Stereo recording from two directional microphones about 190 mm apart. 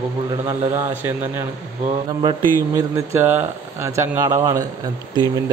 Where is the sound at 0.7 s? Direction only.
15° right (ahead or behind).